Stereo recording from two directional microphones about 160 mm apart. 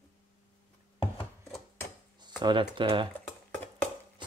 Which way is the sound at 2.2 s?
25° right (ahead or behind).